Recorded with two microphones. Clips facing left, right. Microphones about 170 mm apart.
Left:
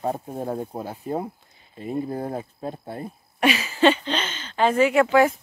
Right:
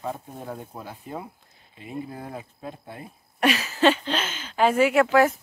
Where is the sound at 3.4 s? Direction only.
Centre (ahead or behind).